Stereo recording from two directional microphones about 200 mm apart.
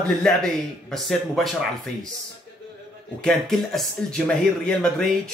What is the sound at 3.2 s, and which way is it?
Speech, centre (ahead or behind).